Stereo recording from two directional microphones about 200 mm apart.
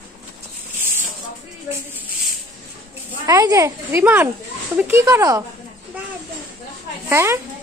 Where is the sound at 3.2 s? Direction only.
15° right (ahead or behind).